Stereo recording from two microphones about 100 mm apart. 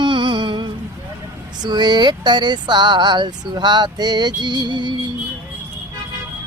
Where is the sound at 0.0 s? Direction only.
55° right (ahead or behind).